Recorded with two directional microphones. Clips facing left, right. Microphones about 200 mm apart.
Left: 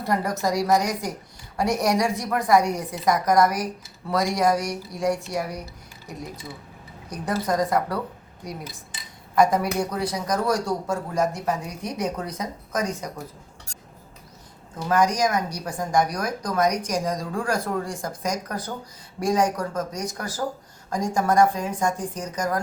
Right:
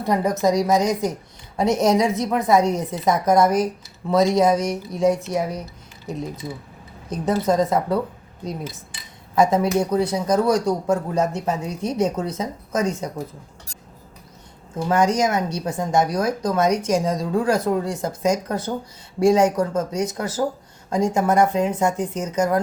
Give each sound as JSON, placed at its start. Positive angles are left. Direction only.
{"t": 0.0, "sound": "speech", "side_deg": -20}
{"t": 9.3, "sound": "speech", "side_deg": -25}
{"t": 14.8, "sound": "speech", "side_deg": -25}